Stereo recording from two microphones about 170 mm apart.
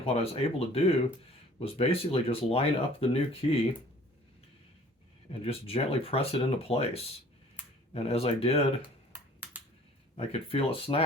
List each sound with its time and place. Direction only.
0.0 s speech: 35° left (ahead or behind)
5.3 s speech: 35° left (ahead or behind)
10.2 s speech: 35° left (ahead or behind)